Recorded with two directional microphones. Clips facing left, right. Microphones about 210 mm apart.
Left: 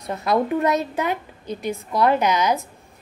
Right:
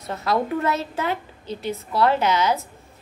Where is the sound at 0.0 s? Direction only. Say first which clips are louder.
Left 2 dB; 15° left (ahead or behind).